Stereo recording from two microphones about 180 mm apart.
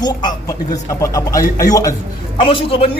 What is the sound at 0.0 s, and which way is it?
A man's voice, 25° left (ahead or behind).